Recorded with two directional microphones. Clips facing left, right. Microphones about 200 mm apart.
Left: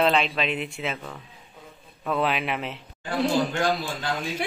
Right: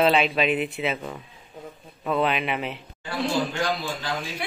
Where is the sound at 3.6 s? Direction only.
50° left (ahead or behind).